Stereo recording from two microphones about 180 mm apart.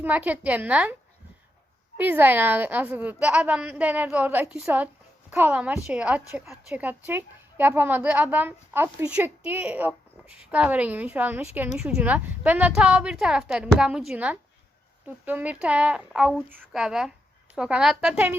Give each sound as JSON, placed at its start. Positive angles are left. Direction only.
{"t": 0.0, "sound": "a woman's voice", "side_deg": -10}
{"t": 2.0, "sound": "a woman's voice", "side_deg": -10}